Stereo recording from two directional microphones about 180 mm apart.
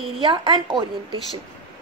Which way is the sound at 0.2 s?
25° right (ahead or behind).